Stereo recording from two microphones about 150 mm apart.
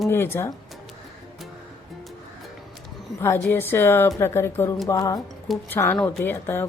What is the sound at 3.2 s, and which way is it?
Speech, 15° left (ahead or behind).